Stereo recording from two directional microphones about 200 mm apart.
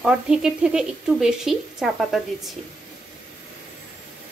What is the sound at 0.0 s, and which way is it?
Speech, 5° right (ahead or behind).